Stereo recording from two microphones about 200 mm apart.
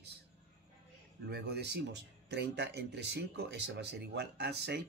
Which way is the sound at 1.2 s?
55° right (ahead or behind).